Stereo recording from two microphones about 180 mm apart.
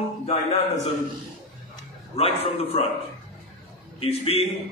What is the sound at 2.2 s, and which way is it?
Speech, 30° left (ahead or behind).